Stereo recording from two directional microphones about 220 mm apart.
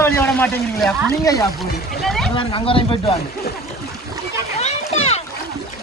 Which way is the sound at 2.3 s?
25° left (ahead or behind).